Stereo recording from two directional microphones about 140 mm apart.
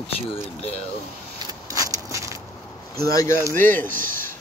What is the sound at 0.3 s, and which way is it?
Speech, 45° left (ahead or behind).